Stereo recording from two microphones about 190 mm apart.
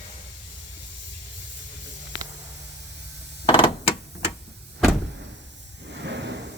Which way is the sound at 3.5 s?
30° left (ahead or behind).